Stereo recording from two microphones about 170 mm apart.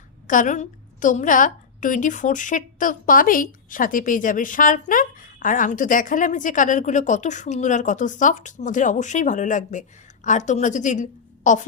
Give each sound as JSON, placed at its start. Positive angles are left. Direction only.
{"t": 0.3, "sound": "a woman's voice", "side_deg": 50}